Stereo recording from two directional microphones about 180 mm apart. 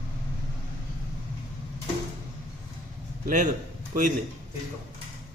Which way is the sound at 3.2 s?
45° right (ahead or behind).